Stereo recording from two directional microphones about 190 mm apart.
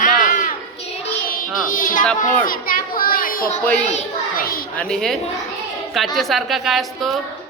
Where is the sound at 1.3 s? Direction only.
45° left (ahead or behind).